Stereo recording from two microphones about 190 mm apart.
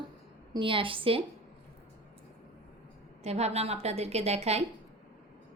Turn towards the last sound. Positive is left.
turn(degrees=-35)  # may be behind; listen again after turning